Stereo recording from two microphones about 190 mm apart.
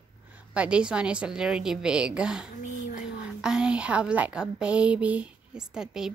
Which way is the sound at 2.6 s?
40° left (ahead or behind).